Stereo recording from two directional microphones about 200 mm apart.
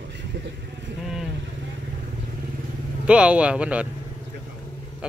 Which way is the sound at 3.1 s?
5° right (ahead or behind).